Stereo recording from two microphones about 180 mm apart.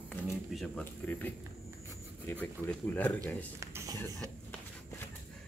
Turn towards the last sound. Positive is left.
turn(degrees=-15)  # may be behind; listen again after turning